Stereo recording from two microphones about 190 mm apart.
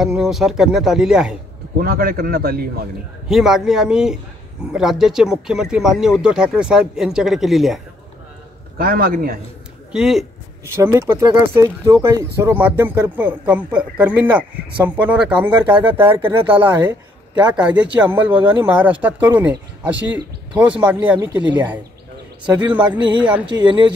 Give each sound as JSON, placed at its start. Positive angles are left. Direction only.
{"t": 0.0, "sound": "speech", "side_deg": 0}
{"t": 1.8, "sound": "a man's voice", "side_deg": -50}
{"t": 3.3, "sound": "speech", "side_deg": 0}
{"t": 8.7, "sound": "a man's voice", "side_deg": -50}
{"t": 9.9, "sound": "speech", "side_deg": 0}
{"t": 10.7, "sound": "speech", "side_deg": -15}
{"t": 16.2, "sound": "speech", "side_deg": -25}
{"t": 16.5, "sound": "speech", "side_deg": -10}
{"t": 22.4, "sound": "a man's voice", "side_deg": -20}